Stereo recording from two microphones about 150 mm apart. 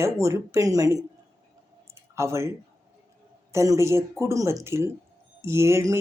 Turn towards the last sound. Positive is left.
turn(degrees=-20)  # may be behind; listen again after turning